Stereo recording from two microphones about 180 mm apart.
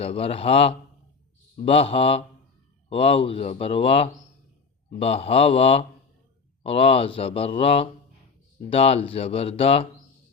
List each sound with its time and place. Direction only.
0.0 s speech: 30° left (ahead or behind)